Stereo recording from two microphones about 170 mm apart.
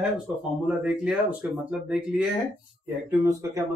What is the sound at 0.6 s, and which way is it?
A man's voice, 5° right (ahead or behind).